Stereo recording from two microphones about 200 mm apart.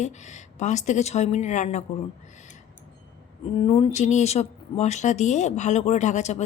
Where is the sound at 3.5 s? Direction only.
30° left (ahead or behind).